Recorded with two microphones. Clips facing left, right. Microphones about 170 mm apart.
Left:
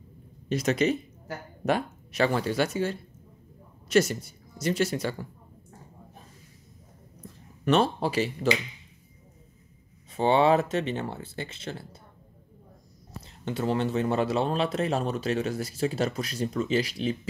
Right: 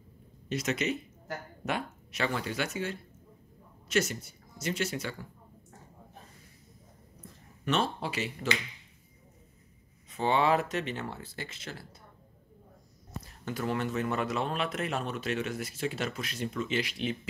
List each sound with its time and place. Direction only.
0.5 s a woman's voice: 35° left (ahead or behind)
7.6 s speech: 40° left (ahead or behind)
10.1 s speech: 30° left (ahead or behind)
13.2 s speech: 25° left (ahead or behind)